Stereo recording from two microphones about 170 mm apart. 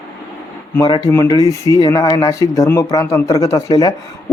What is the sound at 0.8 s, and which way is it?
Speech, 25° left (ahead or behind).